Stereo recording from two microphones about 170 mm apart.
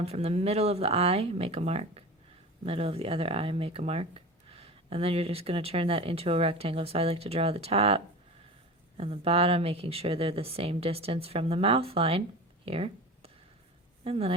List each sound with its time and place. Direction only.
0.0 s speech: 35° right (ahead or behind)
12.6 s a sound: 35° right (ahead or behind)
14.0 s speech: 35° right (ahead or behind)